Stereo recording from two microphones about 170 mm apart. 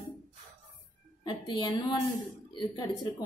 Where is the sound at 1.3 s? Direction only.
25° left (ahead or behind).